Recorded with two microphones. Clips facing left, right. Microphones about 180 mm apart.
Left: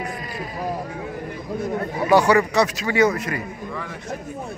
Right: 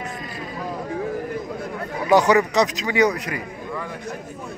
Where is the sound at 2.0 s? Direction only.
20° right (ahead or behind).